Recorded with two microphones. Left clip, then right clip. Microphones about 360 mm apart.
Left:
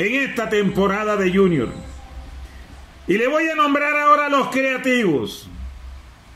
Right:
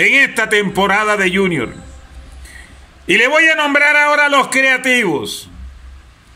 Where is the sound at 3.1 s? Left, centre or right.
Right.